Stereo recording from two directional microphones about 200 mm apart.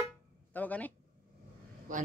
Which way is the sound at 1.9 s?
40° right (ahead or behind).